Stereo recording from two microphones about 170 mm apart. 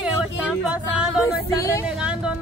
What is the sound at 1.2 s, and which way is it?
Speech, 20° left (ahead or behind).